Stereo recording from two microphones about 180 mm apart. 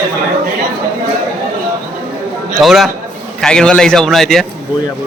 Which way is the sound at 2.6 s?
Centre (ahead or behind).